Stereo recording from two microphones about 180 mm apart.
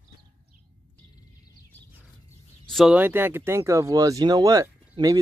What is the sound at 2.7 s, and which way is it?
Speech, centre (ahead or behind).